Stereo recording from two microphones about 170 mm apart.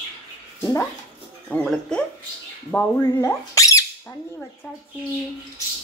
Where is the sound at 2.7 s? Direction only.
10° left (ahead or behind).